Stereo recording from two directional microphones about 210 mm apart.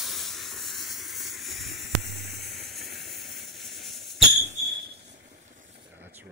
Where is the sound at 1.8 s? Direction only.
55° right (ahead or behind).